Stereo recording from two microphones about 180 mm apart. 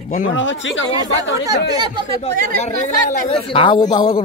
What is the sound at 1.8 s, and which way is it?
Speech, 25° right (ahead or behind).